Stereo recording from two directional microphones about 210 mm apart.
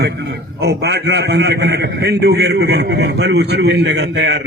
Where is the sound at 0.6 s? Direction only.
50° right (ahead or behind).